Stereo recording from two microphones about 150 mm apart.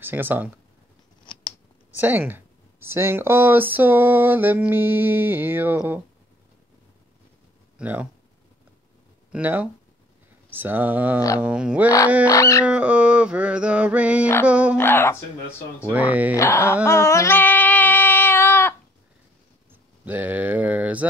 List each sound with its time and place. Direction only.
0.0 s speech: 15° right (ahead or behind)
1.2 s scissors: 35° left (ahead or behind)
2.0 s speech: 10° right (ahead or behind)
7.8 s speech: 10° right (ahead or behind)
9.3 s speech: 10° right (ahead or behind)
11.1 s dog: 20° left (ahead or behind)
11.4 s speech: 5° right (ahead or behind)
12.3 s dog: 20° left (ahead or behind)
12.6 s speech: 10° right (ahead or behind)
14.8 s speech: 15° left (ahead or behind)
15.9 s speech: 10° right (ahead or behind)
16.3 s speech: 15° left (ahead or behind)
16.8 s child singing: 20° left (ahead or behind)
19.7 s a sound: 10° right (ahead or behind)